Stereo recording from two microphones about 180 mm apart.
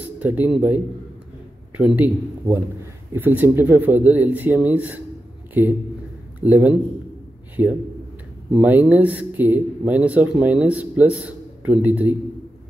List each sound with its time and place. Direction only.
0.2 s a man's voice: 10° right (ahead or behind)